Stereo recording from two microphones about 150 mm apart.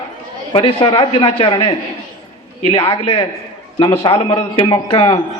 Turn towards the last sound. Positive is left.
turn(degrees=35)  # may be behind; listen again after turning